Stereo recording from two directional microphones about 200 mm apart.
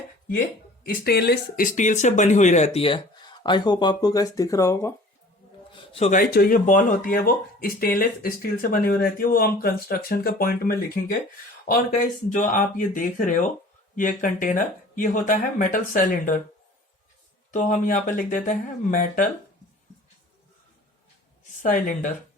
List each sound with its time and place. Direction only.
1.0 s speech: 50° left (ahead or behind); by 4.9 s 15° left (ahead or behind)
5.7 s a sound: 25° left (ahead or behind)
6.1 s speech: 45° left (ahead or behind)
17.5 s speech: 40° left (ahead or behind)
21.6 s speech: 40° left (ahead or behind)